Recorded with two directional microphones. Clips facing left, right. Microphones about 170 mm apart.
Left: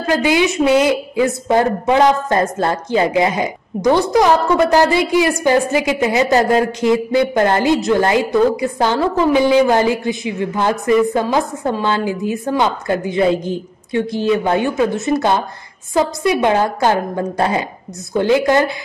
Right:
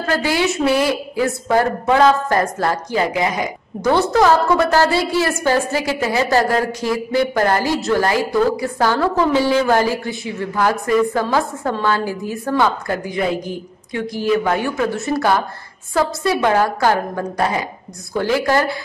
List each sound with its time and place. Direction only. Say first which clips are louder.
0.0 s a woman's voice: left 3 dB; 15° left (ahead or behind)